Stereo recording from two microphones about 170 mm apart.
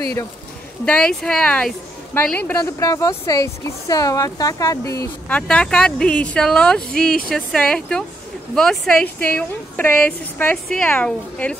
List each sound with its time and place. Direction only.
0.8 s a woman's voice: 5° left (ahead or behind)
5.5 s a woman's voice: 5° left (ahead or behind)